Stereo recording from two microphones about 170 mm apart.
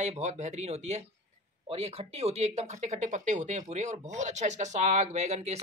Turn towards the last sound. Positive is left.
turn(degrees=-40)  # may be behind; listen again after turning